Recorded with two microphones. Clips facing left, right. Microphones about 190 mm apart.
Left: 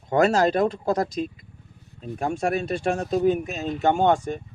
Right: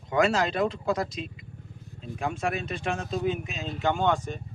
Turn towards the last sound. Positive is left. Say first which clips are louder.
# left 5 dB
turn(degrees=45)  # may be behind; listen again after turning